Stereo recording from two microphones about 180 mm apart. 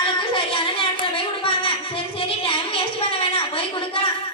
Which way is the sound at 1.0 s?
30° left (ahead or behind).